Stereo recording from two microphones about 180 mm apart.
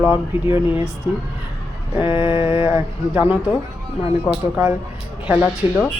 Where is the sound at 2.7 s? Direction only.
10° right (ahead or behind).